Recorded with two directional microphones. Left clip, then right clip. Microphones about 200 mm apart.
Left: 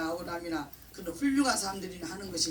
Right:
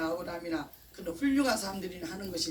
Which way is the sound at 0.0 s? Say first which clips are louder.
Even; 15° left (ahead or behind).